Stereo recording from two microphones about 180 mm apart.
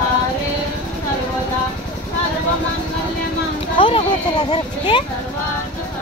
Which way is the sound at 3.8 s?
30° left (ahead or behind).